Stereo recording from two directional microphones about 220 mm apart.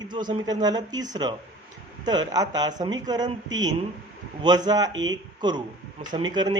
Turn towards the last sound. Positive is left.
turn(degrees=-20)  # may be behind; listen again after turning